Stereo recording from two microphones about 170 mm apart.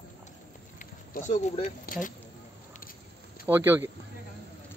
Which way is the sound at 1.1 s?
45° left (ahead or behind).